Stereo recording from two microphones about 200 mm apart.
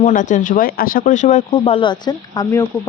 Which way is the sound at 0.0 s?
40° left (ahead or behind).